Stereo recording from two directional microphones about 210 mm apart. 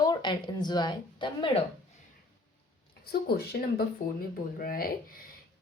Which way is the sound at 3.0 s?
45° left (ahead or behind).